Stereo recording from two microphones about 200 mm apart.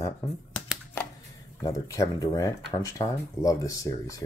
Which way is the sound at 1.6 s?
15° left (ahead or behind).